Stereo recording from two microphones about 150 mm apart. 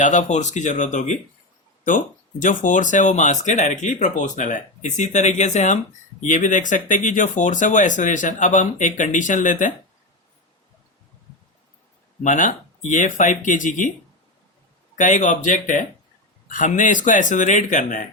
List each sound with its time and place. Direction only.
0.0 s speech: 50° left (ahead or behind)
2.4 s speech: 60° left (ahead or behind)
12.2 s speech: 60° left (ahead or behind)
14.9 s speech: 55° left (ahead or behind)